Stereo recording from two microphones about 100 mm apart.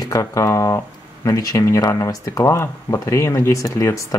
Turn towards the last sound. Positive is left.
turn(degrees=30)  # may be behind; listen again after turning